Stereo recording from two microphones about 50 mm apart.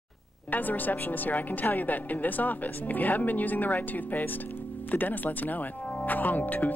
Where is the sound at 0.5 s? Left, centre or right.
Left.